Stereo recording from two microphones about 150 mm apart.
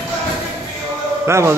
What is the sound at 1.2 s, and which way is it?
Speech, 20° right (ahead or behind).